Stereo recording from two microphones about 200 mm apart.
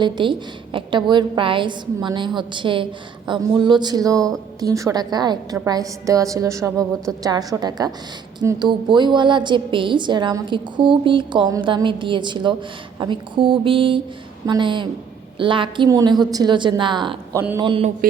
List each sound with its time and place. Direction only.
0.0 s a woman's voice: 25° right (ahead or behind)